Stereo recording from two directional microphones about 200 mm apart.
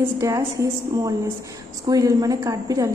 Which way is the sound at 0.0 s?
15° right (ahead or behind).